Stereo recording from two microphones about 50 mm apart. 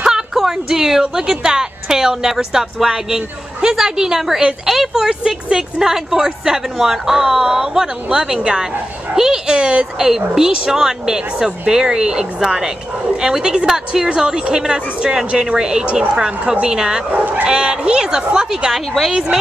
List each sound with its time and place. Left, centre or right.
0.0 s speech: centre
15.8 s a woman's voice: right
16.2 s speech: centre
17.1 s speech: right
17.5 s speech: centre
18.7 s a woman's voice: centre